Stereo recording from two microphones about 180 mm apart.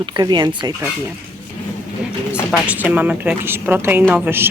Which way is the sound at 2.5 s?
5° right (ahead or behind).